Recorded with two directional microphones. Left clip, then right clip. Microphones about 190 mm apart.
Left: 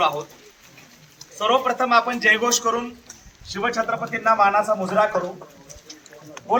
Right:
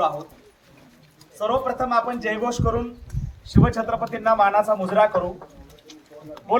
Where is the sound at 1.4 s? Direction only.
30° right (ahead or behind); by 3.8 s 60° right (ahead or behind).